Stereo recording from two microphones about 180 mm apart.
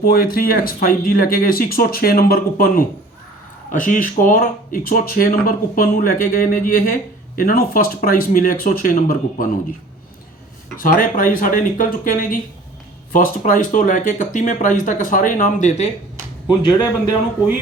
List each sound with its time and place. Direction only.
0.0 s speech: 55° left (ahead or behind)
10.8 s speech: 50° left (ahead or behind)
16.5 s speech: 25° left (ahead or behind)